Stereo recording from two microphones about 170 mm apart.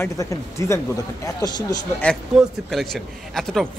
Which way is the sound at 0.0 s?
15° left (ahead or behind).